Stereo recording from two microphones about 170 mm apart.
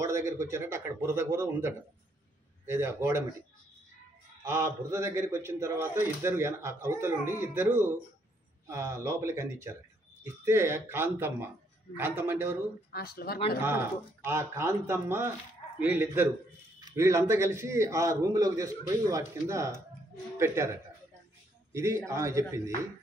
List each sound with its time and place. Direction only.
0.0 s a man's voice: 15° right (ahead or behind)
4.5 s a man's voice: 15° right (ahead or behind)
12.9 s speech: 65° left (ahead or behind)
14.2 s a man's voice: 15° right (ahead or behind)
21.7 s a man's voice: 15° right (ahead or behind)